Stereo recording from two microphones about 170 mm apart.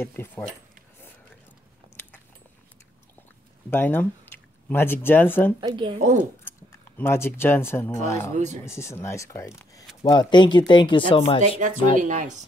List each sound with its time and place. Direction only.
0.0 s speech: 10° left (ahead or behind)
3.7 s speech: 10° left (ahead or behind)
5.6 s a woman's voice: 30° right (ahead or behind)
7.0 s speech: 15° left (ahead or behind); by 11.6 s 35° left (ahead or behind)
12.0 s speech: 45° right (ahead or behind)